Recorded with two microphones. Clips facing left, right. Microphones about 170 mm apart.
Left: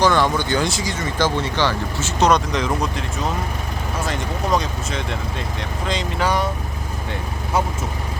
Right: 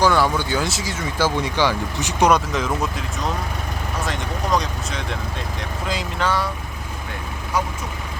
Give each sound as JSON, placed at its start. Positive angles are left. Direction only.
{"t": 0.0, "sound": "speech", "side_deg": -10}
{"t": 6.2, "sound": "speech", "side_deg": 20}